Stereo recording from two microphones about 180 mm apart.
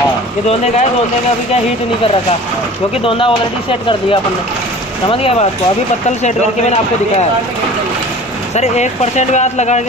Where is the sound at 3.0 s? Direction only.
30° left (ahead or behind).